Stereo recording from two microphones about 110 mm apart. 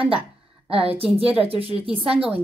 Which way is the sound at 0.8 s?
60° right (ahead or behind).